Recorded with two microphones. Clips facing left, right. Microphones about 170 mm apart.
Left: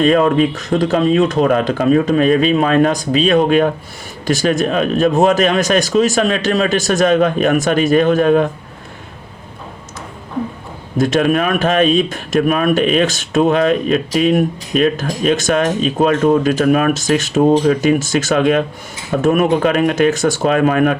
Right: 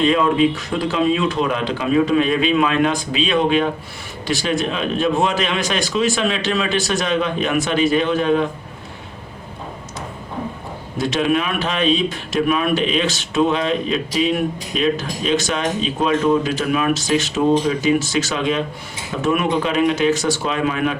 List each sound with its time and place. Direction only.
0.0 s speech: 50° left (ahead or behind)
10.9 s speech: 50° left (ahead or behind)